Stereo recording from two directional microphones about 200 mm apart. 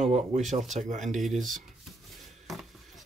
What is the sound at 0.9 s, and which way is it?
Speech, 40° right (ahead or behind).